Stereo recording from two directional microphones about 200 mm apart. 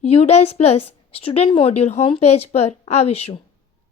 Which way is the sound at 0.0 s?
30° left (ahead or behind).